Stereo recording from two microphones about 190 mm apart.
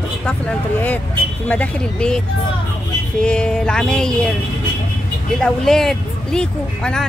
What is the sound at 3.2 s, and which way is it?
Speech, 5° left (ahead or behind).